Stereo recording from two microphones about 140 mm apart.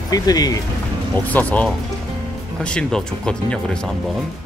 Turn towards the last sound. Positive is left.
turn(degrees=5)  # may be behind; listen again after turning